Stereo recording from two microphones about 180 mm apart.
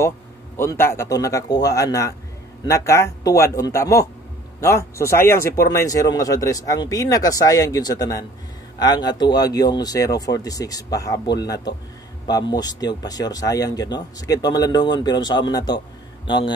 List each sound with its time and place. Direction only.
0.6 s speech: 15° left (ahead or behind)